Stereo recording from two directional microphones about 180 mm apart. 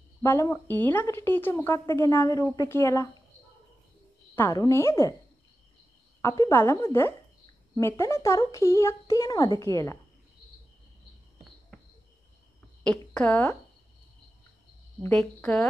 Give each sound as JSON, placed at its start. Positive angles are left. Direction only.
{"t": 0.2, "sound": "a woman's voice", "side_deg": 15}
{"t": 4.4, "sound": "a woman's voice", "side_deg": 20}
{"t": 6.2, "sound": "a woman's voice", "side_deg": 20}
{"t": 13.1, "sound": "a woman's voice", "side_deg": 5}
{"t": 15.0, "sound": "a woman's voice", "side_deg": 5}